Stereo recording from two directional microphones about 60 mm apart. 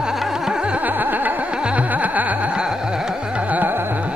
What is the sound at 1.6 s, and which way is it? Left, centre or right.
Music, right.